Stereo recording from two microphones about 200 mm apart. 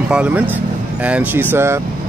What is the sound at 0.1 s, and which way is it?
Speech, 5° right (ahead or behind).